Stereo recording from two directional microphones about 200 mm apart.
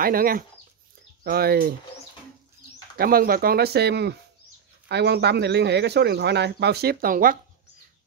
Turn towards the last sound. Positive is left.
turn(degrees=-45)  # may be behind; listen again after turning